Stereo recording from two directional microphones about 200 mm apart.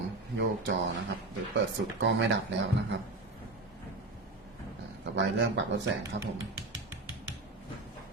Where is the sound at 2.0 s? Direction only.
65° right (ahead or behind).